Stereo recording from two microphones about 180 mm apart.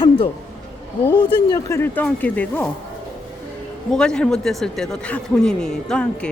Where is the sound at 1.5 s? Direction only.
15° left (ahead or behind).